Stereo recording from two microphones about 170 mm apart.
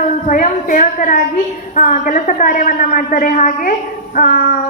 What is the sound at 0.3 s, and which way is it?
A woman's voice, 50° left (ahead or behind).